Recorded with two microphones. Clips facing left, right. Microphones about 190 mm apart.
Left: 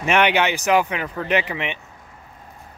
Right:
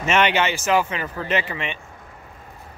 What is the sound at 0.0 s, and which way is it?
Speech, 15° left (ahead or behind).